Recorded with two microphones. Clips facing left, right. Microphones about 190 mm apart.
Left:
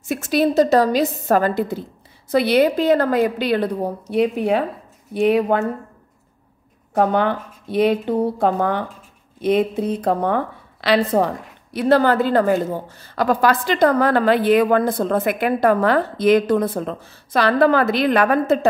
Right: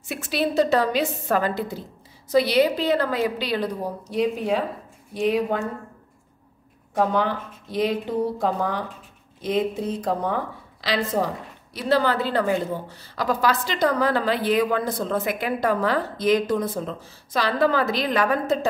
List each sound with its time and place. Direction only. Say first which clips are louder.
0.0 s a woman's voice: left 7 dB; 45° left (ahead or behind); by 5.7 s 60° left (ahead or behind)
6.9 s a woman's voice: left 4 dB; 60° left (ahead or behind)